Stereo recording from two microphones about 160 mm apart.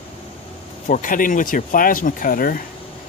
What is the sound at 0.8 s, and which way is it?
Speech, 55° left (ahead or behind).